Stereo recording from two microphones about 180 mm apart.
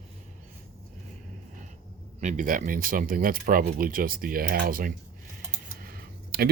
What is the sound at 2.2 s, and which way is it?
Speech, 45° right (ahead or behind).